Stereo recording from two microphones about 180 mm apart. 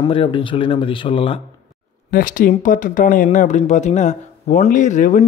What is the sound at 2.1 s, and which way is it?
Speech, 50° left (ahead or behind).